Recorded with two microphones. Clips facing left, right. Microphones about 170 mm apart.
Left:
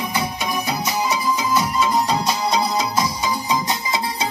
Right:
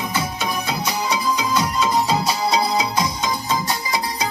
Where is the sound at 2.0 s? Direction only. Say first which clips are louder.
Even; 5° right (ahead or behind).